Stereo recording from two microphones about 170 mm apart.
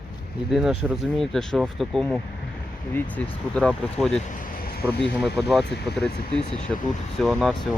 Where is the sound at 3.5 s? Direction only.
Centre (ahead or behind).